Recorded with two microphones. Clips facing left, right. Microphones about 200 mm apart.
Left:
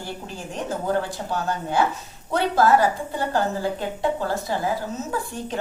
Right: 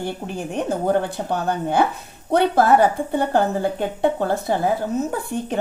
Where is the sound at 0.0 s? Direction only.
60° right (ahead or behind).